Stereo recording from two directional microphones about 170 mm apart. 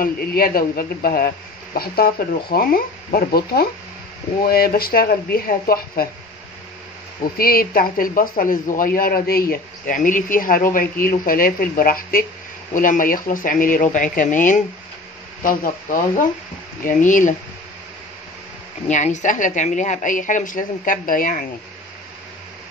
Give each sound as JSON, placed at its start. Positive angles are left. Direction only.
{"t": 0.0, "sound": "speech", "side_deg": 60}
{"t": 7.3, "sound": "a woman's voice", "side_deg": 60}
{"t": 18.9, "sound": "a woman's voice", "side_deg": 45}